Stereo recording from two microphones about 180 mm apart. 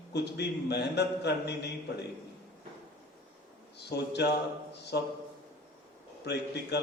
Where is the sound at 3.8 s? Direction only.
65° left (ahead or behind).